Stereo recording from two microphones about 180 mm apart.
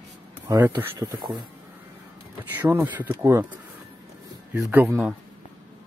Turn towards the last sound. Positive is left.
turn(degrees=-10)  # may be behind; listen again after turning